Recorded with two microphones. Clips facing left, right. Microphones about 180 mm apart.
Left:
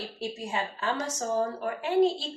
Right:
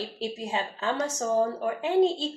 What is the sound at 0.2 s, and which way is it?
A woman's voice, 20° right (ahead or behind).